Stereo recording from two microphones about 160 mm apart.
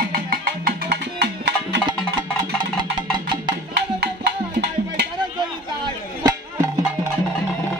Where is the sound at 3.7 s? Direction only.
80° right.